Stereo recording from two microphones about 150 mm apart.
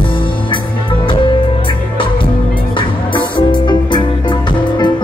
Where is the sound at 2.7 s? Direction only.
35° left (ahead or behind).